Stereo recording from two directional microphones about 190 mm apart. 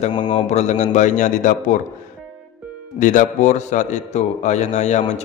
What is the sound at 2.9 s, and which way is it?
A man's voice, 40° left (ahead or behind).